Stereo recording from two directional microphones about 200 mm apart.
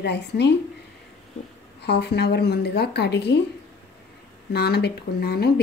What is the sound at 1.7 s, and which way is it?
A woman's voice, 55° left (ahead or behind).